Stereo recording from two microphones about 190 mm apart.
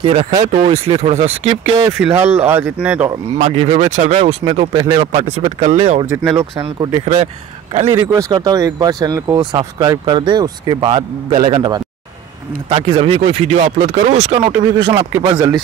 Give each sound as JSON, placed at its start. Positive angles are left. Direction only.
{"t": 0.0, "sound": "speech", "side_deg": -30}
{"t": 2.0, "sound": "speech", "side_deg": -5}
{"t": 3.3, "sound": "speech", "side_deg": -35}
{"t": 4.7, "sound": "speech", "side_deg": -20}
{"t": 6.0, "sound": "speech", "side_deg": -15}
{"t": 8.1, "sound": "speech", "side_deg": -20}
{"t": 15.1, "sound": "speech", "side_deg": -15}